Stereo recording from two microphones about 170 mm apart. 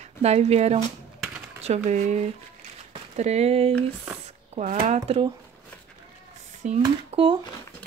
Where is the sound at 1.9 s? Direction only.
40° right (ahead or behind).